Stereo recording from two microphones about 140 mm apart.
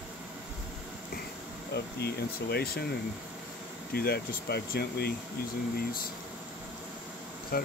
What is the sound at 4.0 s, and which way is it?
Speech, 90° left.